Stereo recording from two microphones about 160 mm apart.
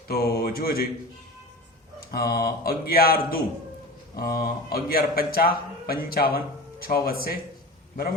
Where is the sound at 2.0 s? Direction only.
70° left (ahead or behind).